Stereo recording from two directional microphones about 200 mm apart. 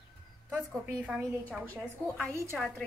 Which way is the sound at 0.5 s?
5° right (ahead or behind).